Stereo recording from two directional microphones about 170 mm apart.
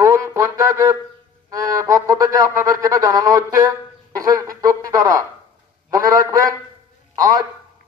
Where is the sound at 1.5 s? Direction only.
20° right (ahead or behind).